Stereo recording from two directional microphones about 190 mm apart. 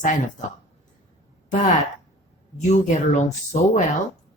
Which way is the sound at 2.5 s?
40° left (ahead or behind).